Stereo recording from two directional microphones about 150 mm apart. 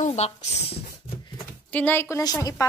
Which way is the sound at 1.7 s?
15° left (ahead or behind).